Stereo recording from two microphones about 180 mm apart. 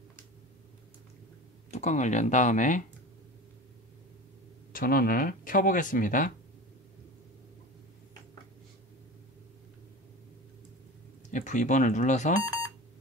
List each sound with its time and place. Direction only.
1.7 s speech: 40° left (ahead or behind)
4.7 s speech: 55° left (ahead or behind)
11.2 s speech: 45° left (ahead or behind)